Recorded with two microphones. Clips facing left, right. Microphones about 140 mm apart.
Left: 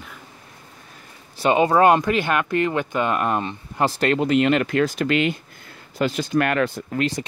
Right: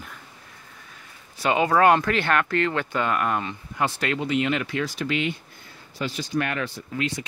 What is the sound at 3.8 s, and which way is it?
Speech, 40° left (ahead or behind).